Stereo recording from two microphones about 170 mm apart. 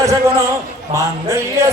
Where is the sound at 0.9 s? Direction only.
15° right (ahead or behind).